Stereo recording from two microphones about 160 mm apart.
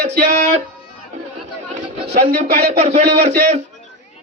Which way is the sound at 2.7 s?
50° right (ahead or behind).